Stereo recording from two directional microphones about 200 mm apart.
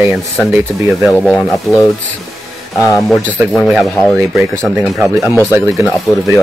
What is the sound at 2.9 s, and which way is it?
Speech, centre (ahead or behind).